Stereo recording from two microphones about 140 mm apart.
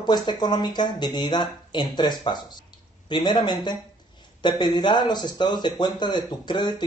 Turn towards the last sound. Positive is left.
turn(degrees=30)  # may be behind; listen again after turning